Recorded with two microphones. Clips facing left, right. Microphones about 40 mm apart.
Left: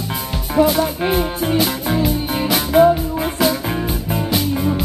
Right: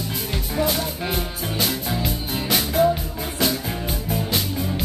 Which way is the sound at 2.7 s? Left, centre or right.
Left.